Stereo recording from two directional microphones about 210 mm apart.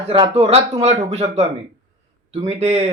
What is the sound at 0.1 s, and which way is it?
Speech, 30° right (ahead or behind).